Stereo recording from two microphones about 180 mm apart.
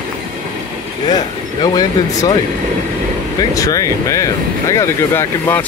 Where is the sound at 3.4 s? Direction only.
20° left (ahead or behind).